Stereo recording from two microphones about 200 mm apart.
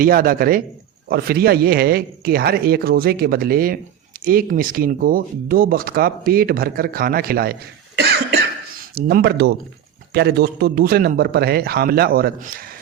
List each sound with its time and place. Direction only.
0.0 s speech: 45° right (ahead or behind)
9.0 s speech: 50° right (ahead or behind)